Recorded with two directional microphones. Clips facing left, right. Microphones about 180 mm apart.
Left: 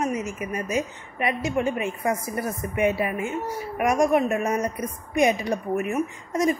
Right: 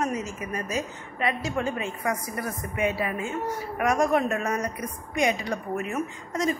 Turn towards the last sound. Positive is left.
turn(degrees=20)  # may be behind; listen again after turning